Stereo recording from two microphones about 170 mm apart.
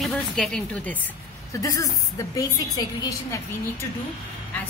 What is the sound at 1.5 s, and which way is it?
A woman's voice, 20° left (ahead or behind).